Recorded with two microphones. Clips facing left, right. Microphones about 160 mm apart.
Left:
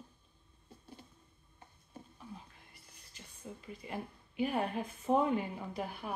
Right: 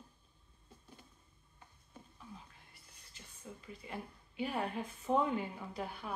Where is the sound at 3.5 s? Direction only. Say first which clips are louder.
Left 3 dB; 20° left (ahead or behind).